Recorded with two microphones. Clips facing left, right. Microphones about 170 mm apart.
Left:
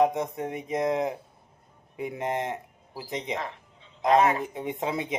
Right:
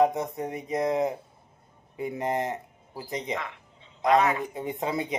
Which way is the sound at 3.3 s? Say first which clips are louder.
Left 1 dB; 35° left (ahead or behind).